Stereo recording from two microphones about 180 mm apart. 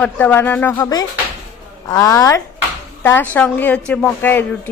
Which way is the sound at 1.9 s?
15° left (ahead or behind).